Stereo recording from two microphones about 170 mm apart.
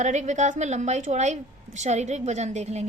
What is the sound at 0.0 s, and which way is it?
A woman's voice, 45° right (ahead or behind).